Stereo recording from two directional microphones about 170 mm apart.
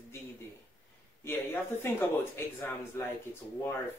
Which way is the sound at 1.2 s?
15° left (ahead or behind).